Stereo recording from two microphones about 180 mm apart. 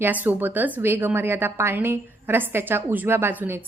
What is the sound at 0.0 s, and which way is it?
A woman's voice, 10° right (ahead or behind).